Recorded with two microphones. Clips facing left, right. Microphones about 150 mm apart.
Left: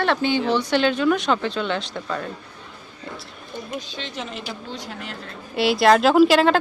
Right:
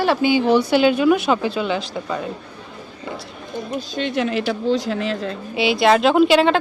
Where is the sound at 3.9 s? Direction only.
65° right (ahead or behind); by 5.3 s 90° right.